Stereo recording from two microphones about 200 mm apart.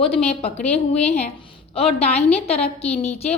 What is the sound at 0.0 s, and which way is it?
A woman's voice, 30° left (ahead or behind).